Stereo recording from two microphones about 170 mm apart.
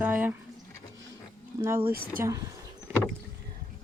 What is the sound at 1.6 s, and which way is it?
Speech, 10° right (ahead or behind).